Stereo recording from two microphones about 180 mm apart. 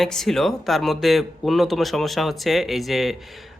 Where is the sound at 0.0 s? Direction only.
Centre (ahead or behind).